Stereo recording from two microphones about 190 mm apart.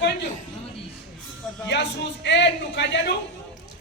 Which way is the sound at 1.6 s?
65° left (ahead or behind).